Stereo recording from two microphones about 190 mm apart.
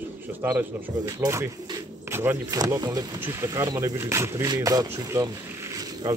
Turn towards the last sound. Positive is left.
turn(degrees=-20)  # may be behind; listen again after turning